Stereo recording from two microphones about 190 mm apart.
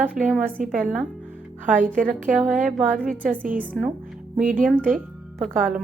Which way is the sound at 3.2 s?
45° right (ahead or behind).